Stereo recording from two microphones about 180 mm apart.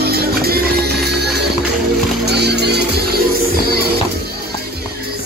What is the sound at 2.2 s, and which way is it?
Music, 65° right (ahead or behind).